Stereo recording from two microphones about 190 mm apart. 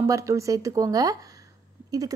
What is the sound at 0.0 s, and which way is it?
A woman's voice, 15° right (ahead or behind).